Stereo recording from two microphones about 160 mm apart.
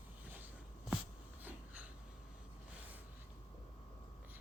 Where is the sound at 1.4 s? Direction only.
10° right (ahead or behind).